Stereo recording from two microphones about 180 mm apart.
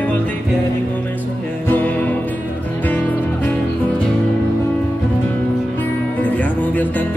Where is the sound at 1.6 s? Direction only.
10° left (ahead or behind).